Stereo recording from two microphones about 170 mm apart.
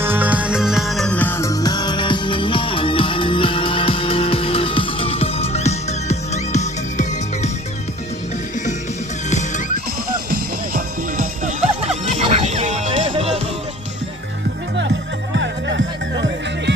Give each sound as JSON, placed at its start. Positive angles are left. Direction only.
{"t": 0.0, "sound": "music", "side_deg": -10}
{"t": 10.8, "sound": "music", "side_deg": -50}